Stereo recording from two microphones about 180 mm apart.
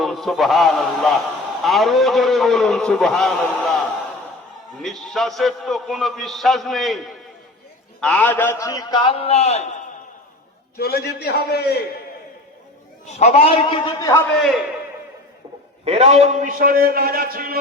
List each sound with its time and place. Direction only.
0.0 s a man's voice: centre (ahead or behind)
4.8 s a man's voice: centre (ahead or behind)
8.0 s a man's voice: 10° left (ahead or behind); by 9.6 s 35° left (ahead or behind)
10.8 s a man's voice: 60° left (ahead or behind)
13.1 s a man's voice: 35° left (ahead or behind)
14.3 s a man's voice: centre (ahead or behind)
15.8 s a man's voice: 35° right (ahead or behind); by 17.6 s 55° right (ahead or behind)